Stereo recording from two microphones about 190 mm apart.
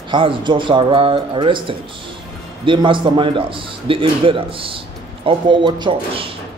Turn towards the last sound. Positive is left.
turn(degrees=-25)  # may be behind; listen again after turning